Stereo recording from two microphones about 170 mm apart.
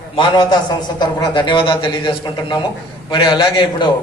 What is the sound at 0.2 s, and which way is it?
A man's voice, 25° left (ahead or behind).